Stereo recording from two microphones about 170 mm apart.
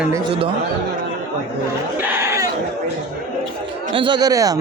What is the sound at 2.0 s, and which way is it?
Goat, 10° right (ahead or behind).